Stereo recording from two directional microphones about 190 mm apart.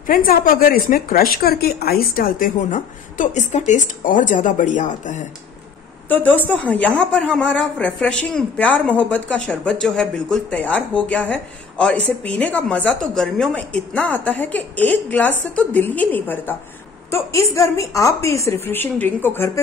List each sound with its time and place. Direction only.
0.0 s a woman's voice: 50° left (ahead or behind)
6.0 s a woman's voice: 10° left (ahead or behind)